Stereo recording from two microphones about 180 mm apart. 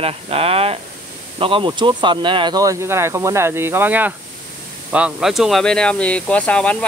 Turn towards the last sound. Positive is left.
turn(degrees=5)  # may be behind; listen again after turning